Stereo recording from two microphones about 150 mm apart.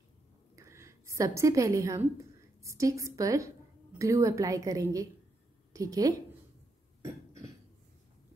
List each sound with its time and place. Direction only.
0.6 s a woman's voice: 20° right (ahead or behind)